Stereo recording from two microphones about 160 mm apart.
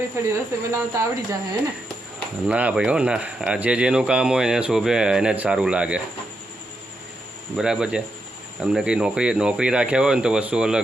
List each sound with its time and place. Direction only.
0.2 s speech: 15° right (ahead or behind)
2.5 s speech: 10° right (ahead or behind)
7.5 s speech: 5° right (ahead or behind)